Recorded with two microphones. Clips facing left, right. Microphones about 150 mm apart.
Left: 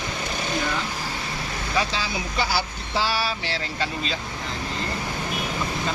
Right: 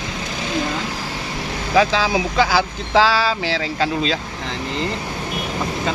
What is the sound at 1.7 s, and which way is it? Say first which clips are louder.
Speech: right 10 dB; 90° right.